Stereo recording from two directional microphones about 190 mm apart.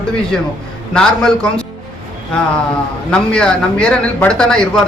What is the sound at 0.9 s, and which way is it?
Speech, 5° left (ahead or behind).